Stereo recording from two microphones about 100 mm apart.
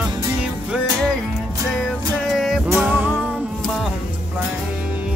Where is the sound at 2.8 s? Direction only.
20° right (ahead or behind).